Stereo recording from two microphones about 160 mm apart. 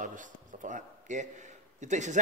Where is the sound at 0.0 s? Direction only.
55° right (ahead or behind).